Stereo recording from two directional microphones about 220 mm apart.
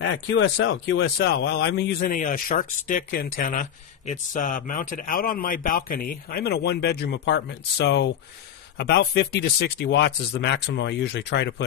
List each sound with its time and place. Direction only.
0.0 s speech: 55° left (ahead or behind)